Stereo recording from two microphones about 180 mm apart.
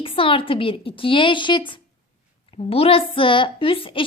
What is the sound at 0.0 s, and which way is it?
Speech, 30° left (ahead or behind).